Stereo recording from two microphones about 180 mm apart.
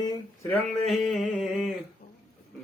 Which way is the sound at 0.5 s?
Centre (ahead or behind).